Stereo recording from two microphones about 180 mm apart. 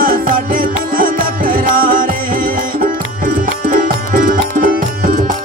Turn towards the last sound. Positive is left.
turn(degrees=-50)  # may be behind; listen again after turning